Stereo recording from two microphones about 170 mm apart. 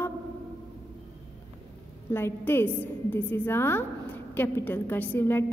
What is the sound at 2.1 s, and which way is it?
A woman's voice, 15° left (ahead or behind).